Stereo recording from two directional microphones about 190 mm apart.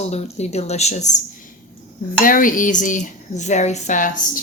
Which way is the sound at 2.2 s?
45° left (ahead or behind).